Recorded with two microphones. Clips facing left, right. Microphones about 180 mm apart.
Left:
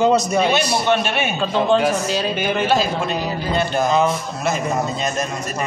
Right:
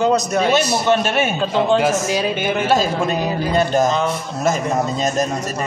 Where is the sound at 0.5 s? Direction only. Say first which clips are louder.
Right 2 dB; 45° right (ahead or behind).